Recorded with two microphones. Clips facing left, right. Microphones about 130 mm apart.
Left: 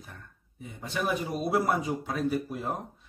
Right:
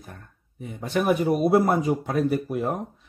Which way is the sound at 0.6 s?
60° right (ahead or behind).